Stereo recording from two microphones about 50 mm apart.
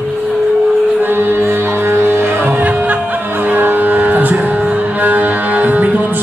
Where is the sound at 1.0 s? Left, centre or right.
Right.